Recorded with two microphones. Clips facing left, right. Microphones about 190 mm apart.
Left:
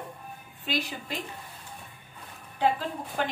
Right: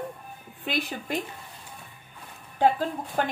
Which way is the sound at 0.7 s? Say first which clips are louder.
Right 2 dB; 55° right (ahead or behind).